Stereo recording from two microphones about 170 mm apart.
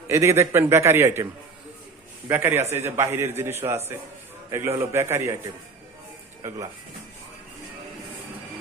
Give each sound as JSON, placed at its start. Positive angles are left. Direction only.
{"t": 0.1, "sound": "a man's voice", "side_deg": -15}
{"t": 4.8, "sound": "a man's voice", "side_deg": -15}